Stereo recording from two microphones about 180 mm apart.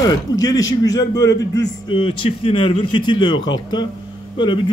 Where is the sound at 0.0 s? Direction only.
20° left (ahead or behind).